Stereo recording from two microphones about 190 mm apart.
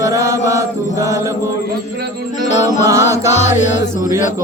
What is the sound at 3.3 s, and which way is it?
Music, 35° left (ahead or behind).